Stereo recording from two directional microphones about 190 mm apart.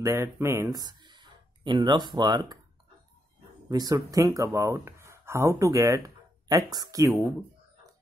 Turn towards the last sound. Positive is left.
turn(degrees=-15)  # may be behind; listen again after turning